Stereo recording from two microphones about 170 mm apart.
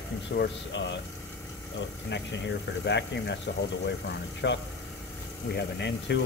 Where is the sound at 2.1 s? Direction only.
90° left.